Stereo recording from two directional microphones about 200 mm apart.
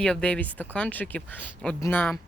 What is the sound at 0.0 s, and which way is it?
Speech, 5° left (ahead or behind).